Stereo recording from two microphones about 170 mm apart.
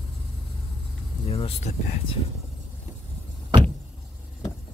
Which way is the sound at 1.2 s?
35° left (ahead or behind).